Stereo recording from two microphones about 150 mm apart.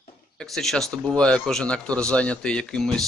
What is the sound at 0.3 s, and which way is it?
Speech, centre (ahead or behind).